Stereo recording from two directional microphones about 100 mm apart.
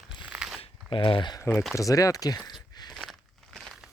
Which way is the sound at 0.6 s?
55° left (ahead or behind).